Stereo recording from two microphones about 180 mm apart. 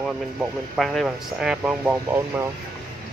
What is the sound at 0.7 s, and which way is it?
Speech, centre (ahead or behind).